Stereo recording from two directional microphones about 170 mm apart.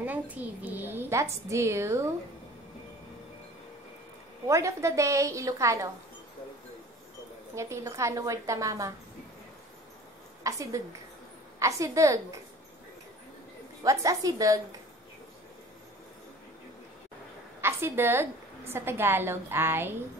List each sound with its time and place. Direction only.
0.0 s a woman's voice: 10° right (ahead or behind)
4.5 s a woman's voice: 20° right (ahead or behind)
7.5 s a woman's voice: 15° right (ahead or behind)
10.4 s a woman's voice: 20° right (ahead or behind)
13.8 s a woman's voice: 20° right (ahead or behind)
17.6 s a woman's voice: 15° right (ahead or behind)